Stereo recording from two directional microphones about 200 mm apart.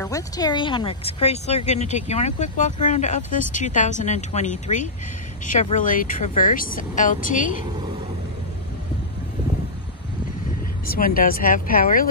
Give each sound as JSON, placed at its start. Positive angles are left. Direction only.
{"t": 0.0, "sound": "speech", "side_deg": 15}
{"t": 10.9, "sound": "speech", "side_deg": 45}